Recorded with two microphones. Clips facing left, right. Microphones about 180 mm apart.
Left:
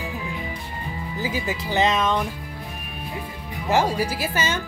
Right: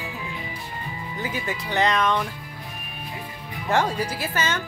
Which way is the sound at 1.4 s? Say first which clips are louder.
Left 2 dB; 5° left (ahead or behind).